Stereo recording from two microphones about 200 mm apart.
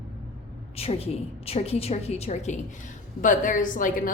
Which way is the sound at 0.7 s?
30° left (ahead or behind).